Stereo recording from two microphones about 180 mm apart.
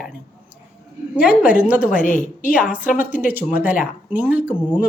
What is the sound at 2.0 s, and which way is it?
Speech, 45° left (ahead or behind).